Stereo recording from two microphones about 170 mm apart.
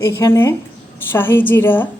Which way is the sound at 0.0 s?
15° left (ahead or behind).